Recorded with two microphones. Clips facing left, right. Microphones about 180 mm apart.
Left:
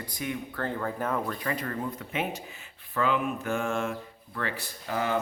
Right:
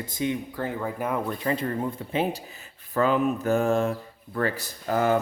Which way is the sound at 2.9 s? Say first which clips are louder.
Right 5 dB; 40° right (ahead or behind).